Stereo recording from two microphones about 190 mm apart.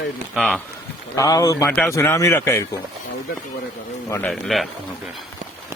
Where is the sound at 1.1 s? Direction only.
20° left (ahead or behind).